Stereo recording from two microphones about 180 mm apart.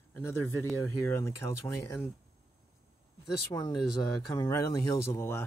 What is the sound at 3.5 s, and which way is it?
Speech, 15° left (ahead or behind).